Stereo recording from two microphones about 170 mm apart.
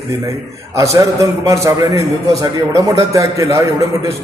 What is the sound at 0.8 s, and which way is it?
A man's voice, 20° right (ahead or behind).